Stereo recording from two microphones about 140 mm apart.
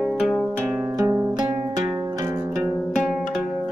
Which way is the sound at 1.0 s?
25° right (ahead or behind).